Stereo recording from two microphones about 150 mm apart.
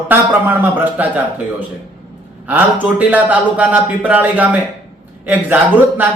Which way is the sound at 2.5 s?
10° right (ahead or behind).